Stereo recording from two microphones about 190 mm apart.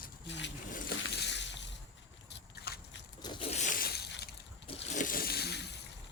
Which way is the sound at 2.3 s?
60° left (ahead or behind).